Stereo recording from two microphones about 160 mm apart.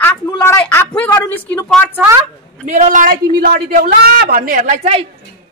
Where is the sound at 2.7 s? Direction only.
50° right (ahead or behind).